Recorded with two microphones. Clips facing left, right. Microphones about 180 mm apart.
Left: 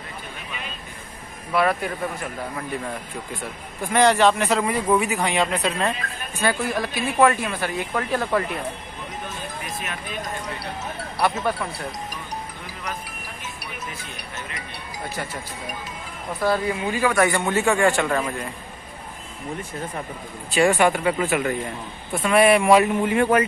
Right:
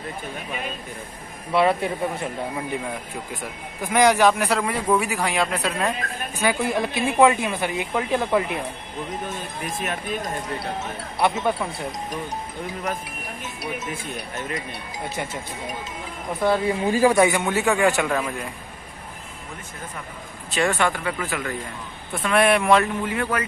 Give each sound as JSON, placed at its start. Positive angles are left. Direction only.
{"t": 1.5, "sound": "speech", "side_deg": -25}
{"t": 3.8, "sound": "speech", "side_deg": -15}
{"t": 6.6, "sound": "speech", "side_deg": -25}
{"t": 9.7, "sound": "speech", "side_deg": -45}
{"t": 11.1, "sound": "speech", "side_deg": -20}
{"t": 16.3, "sound": "speech", "side_deg": -25}
{"t": 17.4, "sound": "speech", "side_deg": 0}
{"t": 20.5, "sound": "speech", "side_deg": 15}
{"t": 22.1, "sound": "speech", "side_deg": 5}
{"t": 22.9, "sound": "speech", "side_deg": 25}